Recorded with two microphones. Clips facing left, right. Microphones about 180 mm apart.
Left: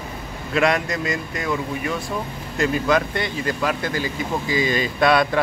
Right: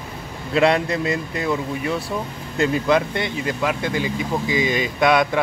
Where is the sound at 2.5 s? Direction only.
25° right (ahead or behind).